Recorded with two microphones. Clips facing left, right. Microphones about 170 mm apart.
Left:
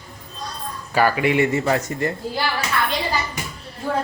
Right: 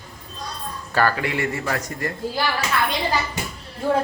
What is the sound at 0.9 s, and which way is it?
Speech, 15° left (ahead or behind).